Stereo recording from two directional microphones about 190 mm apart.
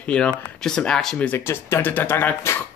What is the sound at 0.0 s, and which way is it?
Speech, 5° left (ahead or behind).